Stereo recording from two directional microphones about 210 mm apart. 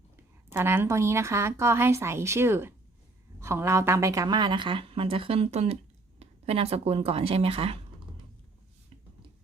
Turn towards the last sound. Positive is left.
turn(degrees=-25)  # may be behind; listen again after turning